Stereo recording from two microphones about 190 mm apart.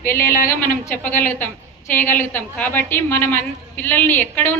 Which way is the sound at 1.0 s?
10° left (ahead or behind).